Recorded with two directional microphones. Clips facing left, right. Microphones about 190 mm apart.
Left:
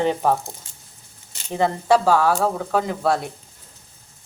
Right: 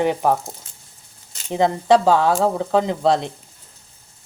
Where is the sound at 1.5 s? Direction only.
20° right (ahead or behind).